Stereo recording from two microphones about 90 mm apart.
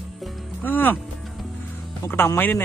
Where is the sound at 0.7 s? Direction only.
20° left (ahead or behind).